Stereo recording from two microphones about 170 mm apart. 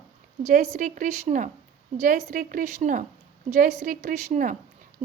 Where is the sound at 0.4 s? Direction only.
40° right (ahead or behind).